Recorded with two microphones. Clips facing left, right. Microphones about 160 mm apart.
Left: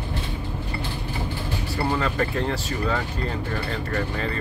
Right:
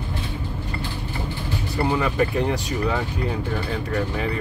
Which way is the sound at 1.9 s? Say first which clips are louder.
Right 3 dB; 10° right (ahead or behind).